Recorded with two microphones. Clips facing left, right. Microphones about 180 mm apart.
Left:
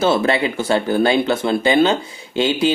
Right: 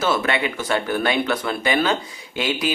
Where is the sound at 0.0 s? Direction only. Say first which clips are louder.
Left 5 dB; 30° left (ahead or behind).